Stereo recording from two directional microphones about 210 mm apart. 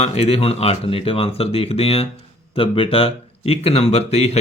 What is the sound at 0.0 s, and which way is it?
Speech, 30° left (ahead or behind).